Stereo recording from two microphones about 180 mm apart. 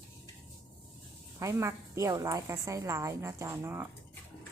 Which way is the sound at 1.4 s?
15° right (ahead or behind).